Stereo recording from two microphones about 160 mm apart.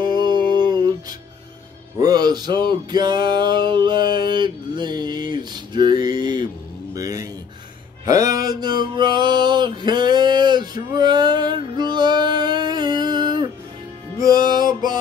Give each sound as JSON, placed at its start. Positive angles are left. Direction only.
{"t": 0.0, "sound": "a sound", "side_deg": -30}
{"t": 2.0, "sound": "music", "side_deg": -25}
{"t": 14.5, "sound": "music", "side_deg": -25}